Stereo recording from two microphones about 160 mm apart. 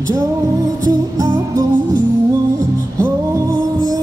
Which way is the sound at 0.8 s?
20° right (ahead or behind).